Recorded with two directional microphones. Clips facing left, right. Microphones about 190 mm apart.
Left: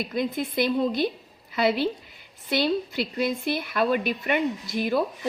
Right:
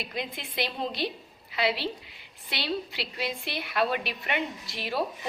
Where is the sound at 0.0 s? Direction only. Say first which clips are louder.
Left 9 dB; 50° left (ahead or behind).